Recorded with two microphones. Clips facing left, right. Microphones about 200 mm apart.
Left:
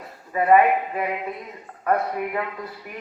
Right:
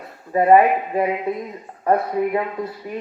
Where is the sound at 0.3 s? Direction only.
30° right (ahead or behind).